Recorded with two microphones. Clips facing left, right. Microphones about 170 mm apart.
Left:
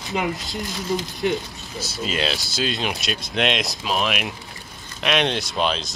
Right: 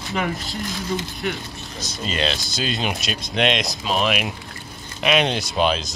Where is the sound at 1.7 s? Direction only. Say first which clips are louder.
Left 1 dB; 5° left (ahead or behind).